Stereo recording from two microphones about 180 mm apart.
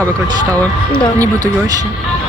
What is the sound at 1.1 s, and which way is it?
Speech, 20° right (ahead or behind).